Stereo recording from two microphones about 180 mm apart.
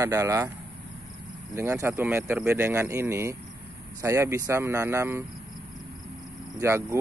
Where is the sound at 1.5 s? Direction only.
15° right (ahead or behind).